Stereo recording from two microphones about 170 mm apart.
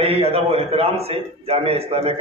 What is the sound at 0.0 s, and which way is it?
A man's voice, 35° right (ahead or behind).